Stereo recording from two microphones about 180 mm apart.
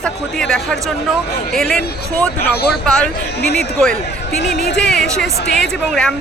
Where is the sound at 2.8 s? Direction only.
5° left (ahead or behind).